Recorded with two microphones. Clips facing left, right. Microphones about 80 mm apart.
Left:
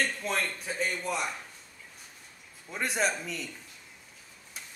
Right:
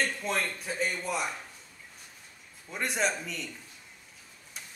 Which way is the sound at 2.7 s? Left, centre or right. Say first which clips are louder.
Even; centre.